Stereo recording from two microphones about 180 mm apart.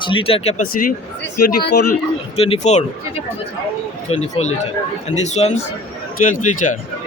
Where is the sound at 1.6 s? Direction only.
65° left (ahead or behind).